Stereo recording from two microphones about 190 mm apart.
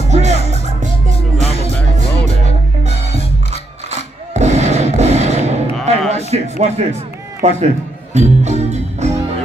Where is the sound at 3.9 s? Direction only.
35° right (ahead or behind).